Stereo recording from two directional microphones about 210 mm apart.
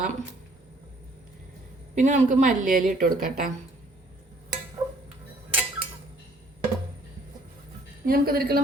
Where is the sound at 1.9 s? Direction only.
35° right (ahead or behind).